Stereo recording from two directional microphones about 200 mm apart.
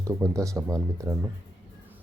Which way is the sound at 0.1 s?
15° right (ahead or behind).